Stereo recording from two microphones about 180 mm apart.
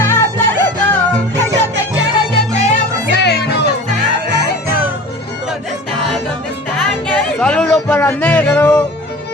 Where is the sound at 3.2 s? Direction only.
70° left (ahead or behind).